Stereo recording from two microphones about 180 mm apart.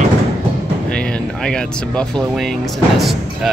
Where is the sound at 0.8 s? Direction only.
5° left (ahead or behind).